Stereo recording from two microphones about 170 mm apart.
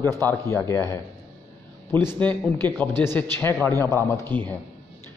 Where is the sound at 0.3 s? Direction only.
15° left (ahead or behind).